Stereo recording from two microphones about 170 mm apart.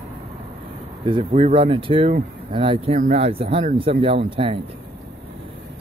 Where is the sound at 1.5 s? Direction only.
30° right (ahead or behind).